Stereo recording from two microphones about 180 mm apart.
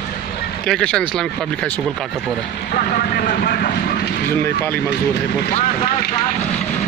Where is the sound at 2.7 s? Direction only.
55° left (ahead or behind).